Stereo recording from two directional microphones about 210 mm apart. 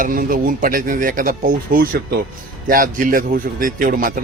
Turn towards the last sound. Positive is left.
turn(degrees=-40)  # may be behind; listen again after turning